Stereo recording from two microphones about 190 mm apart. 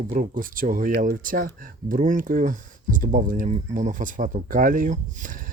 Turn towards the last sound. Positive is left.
turn(degrees=-45)  # may be behind; listen again after turning